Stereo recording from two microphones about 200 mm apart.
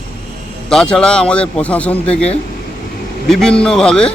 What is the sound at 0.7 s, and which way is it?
Speech, 5° left (ahead or behind).